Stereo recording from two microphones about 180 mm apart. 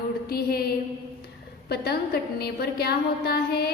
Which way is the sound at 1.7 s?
60° left (ahead or behind).